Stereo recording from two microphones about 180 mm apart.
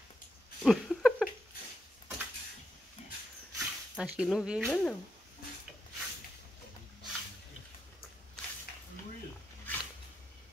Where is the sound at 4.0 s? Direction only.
5° right (ahead or behind).